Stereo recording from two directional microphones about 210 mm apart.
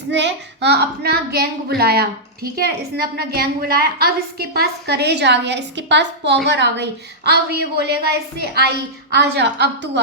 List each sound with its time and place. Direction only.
0.1 s a woman's voice: 55° right (ahead or behind)